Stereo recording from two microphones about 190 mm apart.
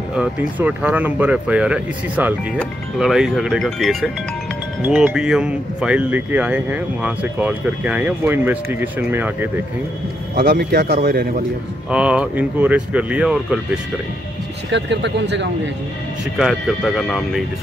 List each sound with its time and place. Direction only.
0.1 s speech: 5° right (ahead or behind)
10.3 s a man's voice: 55° right (ahead or behind)
11.9 s speech: 5° right (ahead or behind)
14.7 s speech: 70° right (ahead or behind)
16.3 s speech: centre (ahead or behind)